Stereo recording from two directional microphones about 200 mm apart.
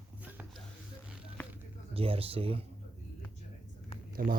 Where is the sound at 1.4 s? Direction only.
10° left (ahead or behind).